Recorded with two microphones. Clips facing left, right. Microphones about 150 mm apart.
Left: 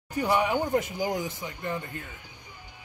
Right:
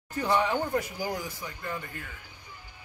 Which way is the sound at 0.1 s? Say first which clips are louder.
Left 1 dB; 15° left (ahead or behind).